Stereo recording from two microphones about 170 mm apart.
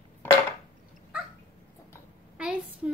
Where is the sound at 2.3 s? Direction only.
5° right (ahead or behind).